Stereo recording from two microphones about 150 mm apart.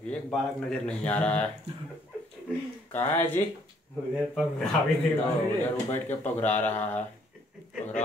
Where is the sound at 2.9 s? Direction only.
15° left (ahead or behind).